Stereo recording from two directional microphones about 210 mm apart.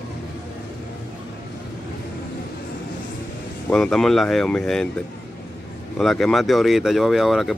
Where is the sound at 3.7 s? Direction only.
Centre (ahead or behind).